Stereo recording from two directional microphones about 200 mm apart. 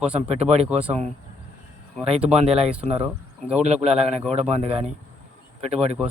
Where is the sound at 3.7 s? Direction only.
30° right (ahead or behind).